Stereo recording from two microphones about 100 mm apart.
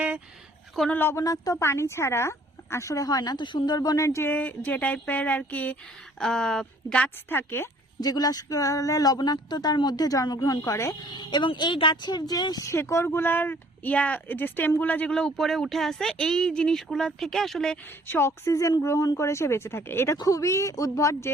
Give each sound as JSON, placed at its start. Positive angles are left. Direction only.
{"t": 0.9, "sound": "a woman's voice", "side_deg": 20}
{"t": 1.1, "sound": "a woman's voice", "side_deg": 35}
{"t": 7.3, "sound": "a woman's voice", "side_deg": 20}
{"t": 8.0, "sound": "speech", "side_deg": 40}
{"t": 11.1, "sound": "speech", "side_deg": 45}
{"t": 12.7, "sound": "speech", "side_deg": 25}
{"t": 18.1, "sound": "a woman's voice", "side_deg": 25}
{"t": 20.1, "sound": "speech", "side_deg": 35}